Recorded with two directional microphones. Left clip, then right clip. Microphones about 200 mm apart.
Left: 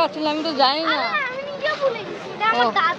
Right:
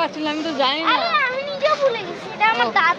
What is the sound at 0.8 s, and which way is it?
Children playing, 45° right (ahead or behind).